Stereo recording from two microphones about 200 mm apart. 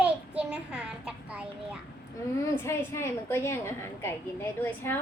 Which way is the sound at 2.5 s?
10° left (ahead or behind).